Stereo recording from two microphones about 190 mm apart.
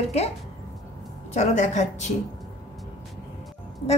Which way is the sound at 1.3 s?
35° left (ahead or behind).